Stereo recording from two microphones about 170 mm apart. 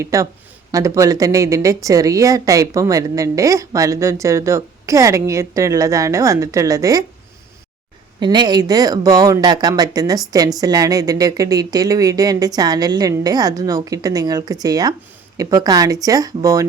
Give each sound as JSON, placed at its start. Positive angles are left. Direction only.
{"t": 0.0, "sound": "a woman's voice", "side_deg": -20}
{"t": 8.2, "sound": "a woman's voice", "side_deg": -25}